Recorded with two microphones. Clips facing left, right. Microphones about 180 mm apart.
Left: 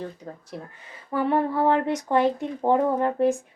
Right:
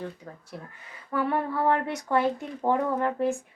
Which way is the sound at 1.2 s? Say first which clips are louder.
Left 4 dB; 25° left (ahead or behind).